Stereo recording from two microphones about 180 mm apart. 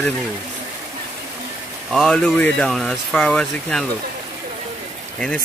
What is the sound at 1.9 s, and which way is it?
Speech, centre (ahead or behind).